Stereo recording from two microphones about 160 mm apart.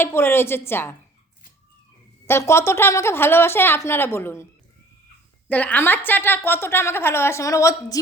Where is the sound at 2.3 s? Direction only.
15° left (ahead or behind).